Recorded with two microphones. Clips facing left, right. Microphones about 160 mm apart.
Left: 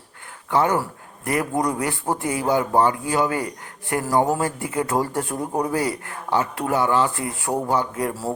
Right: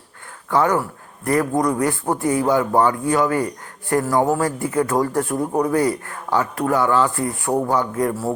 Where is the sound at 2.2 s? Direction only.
30° right (ahead or behind).